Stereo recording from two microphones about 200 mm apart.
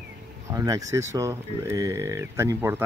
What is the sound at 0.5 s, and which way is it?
Speech, 15° right (ahead or behind).